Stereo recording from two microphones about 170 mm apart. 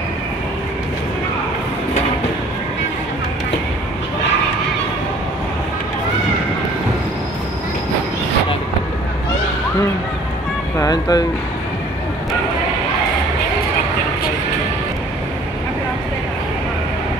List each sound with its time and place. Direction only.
10.8 s speech: 25° left (ahead or behind)